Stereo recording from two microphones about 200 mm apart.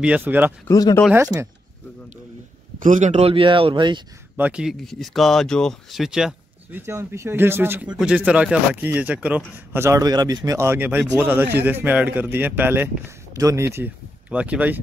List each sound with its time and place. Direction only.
0.0 s speech: 5° right (ahead or behind)
0.7 s speech: 15° left (ahead or behind)
1.1 s speech: 10° right (ahead or behind)
2.8 s speech: 40° right (ahead or behind)
4.4 s speech: 5° right (ahead or behind)
6.9 s speech: 15° right (ahead or behind)